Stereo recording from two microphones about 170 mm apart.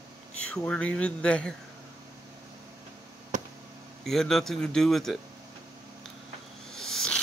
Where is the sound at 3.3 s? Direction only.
50° right (ahead or behind).